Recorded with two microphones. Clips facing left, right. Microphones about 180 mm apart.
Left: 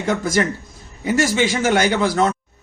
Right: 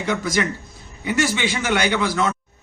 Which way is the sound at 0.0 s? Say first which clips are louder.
Left 3 dB; 45° left (ahead or behind).